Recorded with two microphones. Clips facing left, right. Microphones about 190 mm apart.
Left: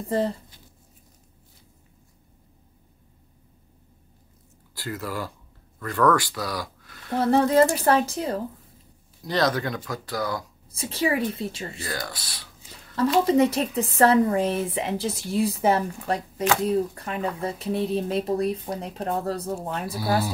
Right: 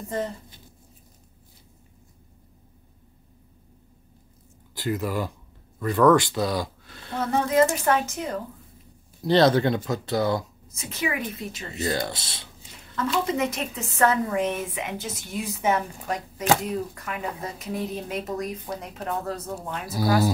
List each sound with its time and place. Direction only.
4.7 s speech: 20° right (ahead or behind)
7.1 s a woman's voice: 35° left (ahead or behind)
9.2 s speech: 30° right (ahead or behind)
10.7 s a woman's voice: 30° left (ahead or behind)
11.8 s speech: 25° right (ahead or behind)
12.9 s a woman's voice: 30° left (ahead or behind)
20.0 s speech: 40° right (ahead or behind)